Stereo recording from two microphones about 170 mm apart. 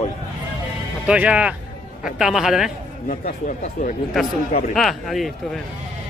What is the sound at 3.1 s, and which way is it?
Speech, 50° left (ahead or behind).